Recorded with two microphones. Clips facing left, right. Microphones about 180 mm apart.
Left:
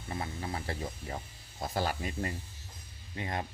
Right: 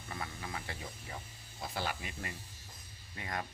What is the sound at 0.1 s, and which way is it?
Speech, 30° left (ahead or behind).